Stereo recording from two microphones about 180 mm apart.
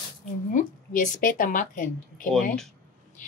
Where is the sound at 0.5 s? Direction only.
45° left (ahead or behind).